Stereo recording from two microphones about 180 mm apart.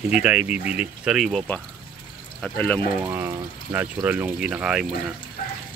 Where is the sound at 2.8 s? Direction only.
30° right (ahead or behind).